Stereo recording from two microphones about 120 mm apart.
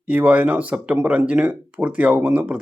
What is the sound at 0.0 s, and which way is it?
Speech, 10° right (ahead or behind).